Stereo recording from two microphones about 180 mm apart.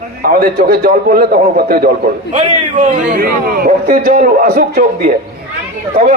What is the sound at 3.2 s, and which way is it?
A man's voice, 55° right (ahead or behind).